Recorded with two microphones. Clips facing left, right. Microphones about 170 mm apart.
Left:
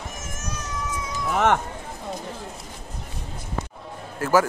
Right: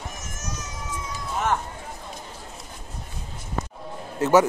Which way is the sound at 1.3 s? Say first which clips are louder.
Left 5 dB; 75° left (ahead or behind).